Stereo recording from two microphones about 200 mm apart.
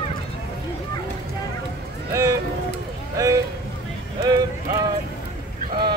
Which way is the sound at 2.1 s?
15° right (ahead or behind).